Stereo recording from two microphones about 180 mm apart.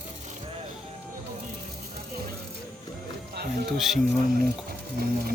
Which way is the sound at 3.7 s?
Centre (ahead or behind).